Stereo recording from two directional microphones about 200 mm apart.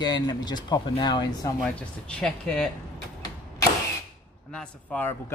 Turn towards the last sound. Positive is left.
turn(degrees=5)  # may be behind; listen again after turning